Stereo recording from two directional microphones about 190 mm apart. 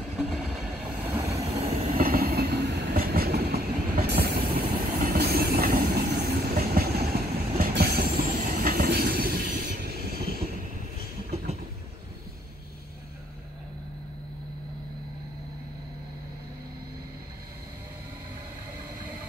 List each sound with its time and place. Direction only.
1.6 s train: 30° right (ahead or behind)
2.0 s train: 50° right (ahead or behind)
4.6 s vehicle: 50° right (ahead or behind)
11.2 s train: 35° right (ahead or behind)